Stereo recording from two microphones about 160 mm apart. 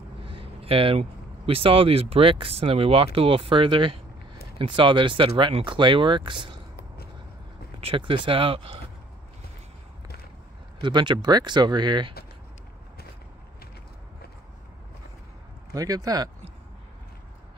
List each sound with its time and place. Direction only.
0.2 s speech: 35° right (ahead or behind)
7.8 s speech: 35° right (ahead or behind)
10.8 s speech: 30° right (ahead or behind)
15.7 s speech: 25° right (ahead or behind)